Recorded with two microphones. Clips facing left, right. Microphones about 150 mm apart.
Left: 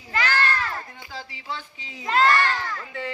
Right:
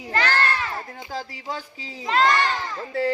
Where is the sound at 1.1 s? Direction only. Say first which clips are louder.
Right 4 dB; 40° right (ahead or behind).